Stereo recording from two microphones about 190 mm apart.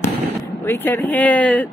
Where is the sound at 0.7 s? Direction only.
10° left (ahead or behind).